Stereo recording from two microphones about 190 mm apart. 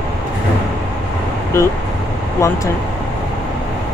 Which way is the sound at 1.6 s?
15° left (ahead or behind).